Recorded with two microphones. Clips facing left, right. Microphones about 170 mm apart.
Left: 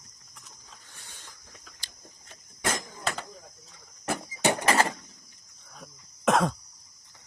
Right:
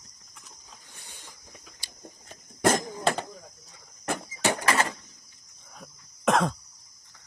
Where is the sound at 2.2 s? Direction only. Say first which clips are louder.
Right 8 dB; 45° right (ahead or behind).